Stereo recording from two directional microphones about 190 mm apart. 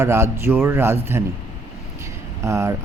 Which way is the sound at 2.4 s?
15° right (ahead or behind).